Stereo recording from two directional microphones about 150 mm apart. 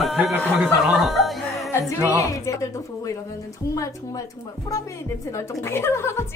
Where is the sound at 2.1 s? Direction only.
20° left (ahead or behind).